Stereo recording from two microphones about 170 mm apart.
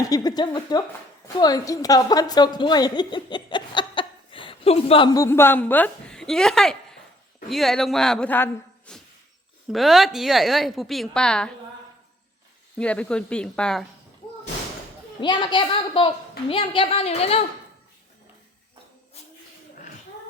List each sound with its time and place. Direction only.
0.0 s a woman's voice: 20° left (ahead or behind)
8.9 s a sound: 5° left (ahead or behind)
9.7 s a woman's voice: centre (ahead or behind)
12.8 s a woman's voice: 5° left (ahead or behind)
15.2 s a woman's voice: 25° left (ahead or behind)